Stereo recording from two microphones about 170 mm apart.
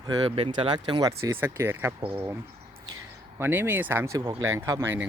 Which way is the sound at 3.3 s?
15° right (ahead or behind).